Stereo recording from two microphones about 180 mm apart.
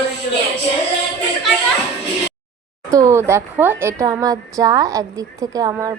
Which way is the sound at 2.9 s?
15° right (ahead or behind).